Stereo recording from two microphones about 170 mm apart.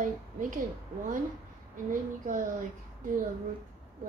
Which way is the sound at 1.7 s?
50° right (ahead or behind).